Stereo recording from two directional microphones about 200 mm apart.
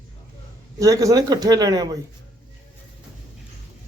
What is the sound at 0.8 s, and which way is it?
Speech, 15° right (ahead or behind).